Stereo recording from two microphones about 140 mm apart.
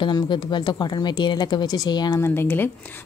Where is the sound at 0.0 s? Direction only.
35° left (ahead or behind).